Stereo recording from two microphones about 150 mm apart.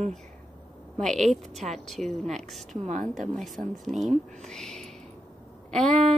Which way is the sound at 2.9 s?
60° right (ahead or behind).